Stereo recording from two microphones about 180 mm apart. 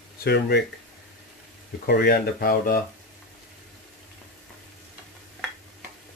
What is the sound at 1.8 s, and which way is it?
Speech, 60° left (ahead or behind).